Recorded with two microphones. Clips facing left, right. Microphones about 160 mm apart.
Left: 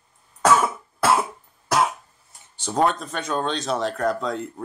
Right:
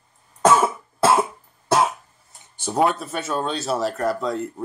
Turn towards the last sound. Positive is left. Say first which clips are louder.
# right 1 dB
turn(degrees=0)  # may be behind; listen again after turning